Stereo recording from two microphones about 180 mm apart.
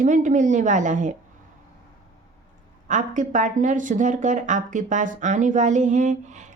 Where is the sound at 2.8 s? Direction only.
45° right (ahead or behind).